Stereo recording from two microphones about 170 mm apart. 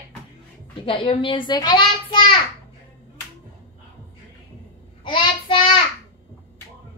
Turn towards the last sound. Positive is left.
turn(degrees=30)  # may be behind; listen again after turning